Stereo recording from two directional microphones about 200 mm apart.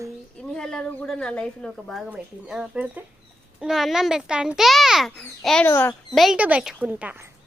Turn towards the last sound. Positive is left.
turn(degrees=-10)  # may be behind; listen again after turning